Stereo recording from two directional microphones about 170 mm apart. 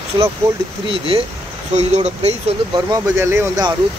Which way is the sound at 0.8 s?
35° right (ahead or behind).